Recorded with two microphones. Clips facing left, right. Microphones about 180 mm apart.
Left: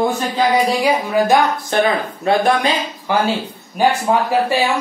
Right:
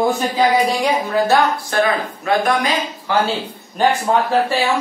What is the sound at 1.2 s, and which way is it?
Speech, 15° left (ahead or behind).